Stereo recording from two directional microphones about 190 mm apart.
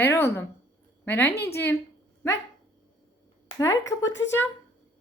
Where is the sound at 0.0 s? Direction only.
10° left (ahead or behind).